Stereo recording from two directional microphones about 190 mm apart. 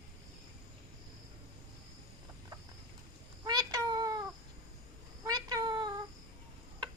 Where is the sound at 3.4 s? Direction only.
20° right (ahead or behind).